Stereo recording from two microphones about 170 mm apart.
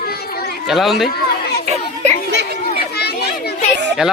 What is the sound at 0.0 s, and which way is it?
Chatter, 65° left (ahead or behind).